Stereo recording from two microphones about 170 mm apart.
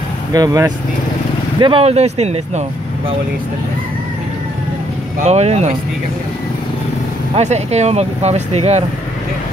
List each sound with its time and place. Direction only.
0.3 s speech: 20° right (ahead or behind)
1.6 s speech: 30° right (ahead or behind)
5.2 s speech: 40° right (ahead or behind)
7.3 s speech: 40° right (ahead or behind)